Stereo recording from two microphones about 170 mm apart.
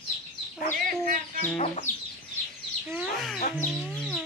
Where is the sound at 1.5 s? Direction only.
45° left (ahead or behind).